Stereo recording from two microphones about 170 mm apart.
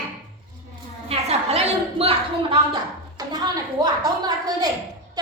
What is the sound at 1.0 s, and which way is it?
A woman's voice, 35° right (ahead or behind).